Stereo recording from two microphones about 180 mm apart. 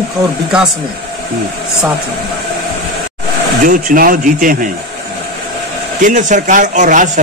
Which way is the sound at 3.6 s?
50° right (ahead or behind).